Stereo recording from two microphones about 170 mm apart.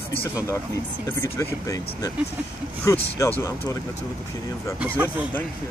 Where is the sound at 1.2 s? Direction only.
15° left (ahead or behind).